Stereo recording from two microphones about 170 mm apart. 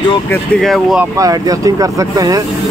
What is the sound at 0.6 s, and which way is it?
Speech, centre (ahead or behind).